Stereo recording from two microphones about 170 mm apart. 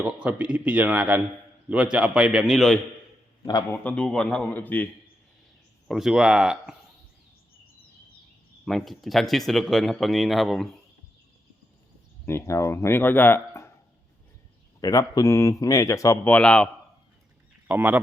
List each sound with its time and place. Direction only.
0.2 s speech: 10° right (ahead or behind)
3.4 s speech: 25° left (ahead or behind)
3.8 s speech: 5° left (ahead or behind)
5.9 s speech: 5° right (ahead or behind)
8.6 s speech: centre (ahead or behind)
12.2 s speech: 15° left (ahead or behind)
14.8 s speech: 20° left (ahead or behind)
17.7 s speech: 10° right (ahead or behind)